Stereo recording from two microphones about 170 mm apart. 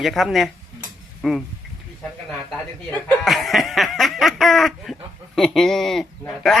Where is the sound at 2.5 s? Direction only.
5° left (ahead or behind).